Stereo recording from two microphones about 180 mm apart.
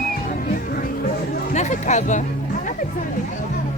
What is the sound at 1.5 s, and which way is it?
Music, 40° left (ahead or behind).